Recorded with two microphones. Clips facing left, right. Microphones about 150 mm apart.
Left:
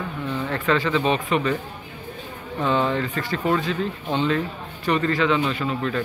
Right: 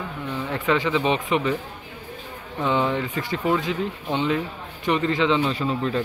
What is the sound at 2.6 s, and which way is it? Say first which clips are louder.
Speech: left 1 dB; 15° right (ahead or behind).